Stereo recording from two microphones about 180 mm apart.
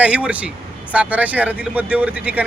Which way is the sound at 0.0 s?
5° right (ahead or behind).